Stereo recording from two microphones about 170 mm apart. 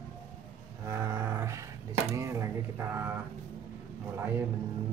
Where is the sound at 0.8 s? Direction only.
15° right (ahead or behind).